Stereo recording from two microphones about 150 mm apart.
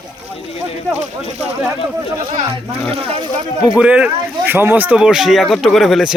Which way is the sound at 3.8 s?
10° right (ahead or behind).